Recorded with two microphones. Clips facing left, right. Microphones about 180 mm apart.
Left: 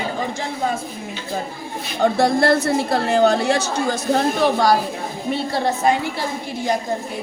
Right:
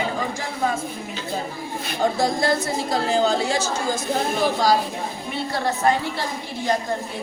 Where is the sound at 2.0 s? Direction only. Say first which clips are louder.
Left 5 dB; 65° left (ahead or behind).